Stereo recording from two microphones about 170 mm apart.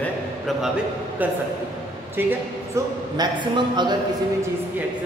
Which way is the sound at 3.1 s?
25° right (ahead or behind).